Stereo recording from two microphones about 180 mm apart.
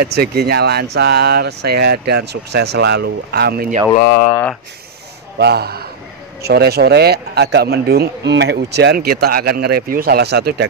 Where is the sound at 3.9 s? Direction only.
55° left (ahead or behind).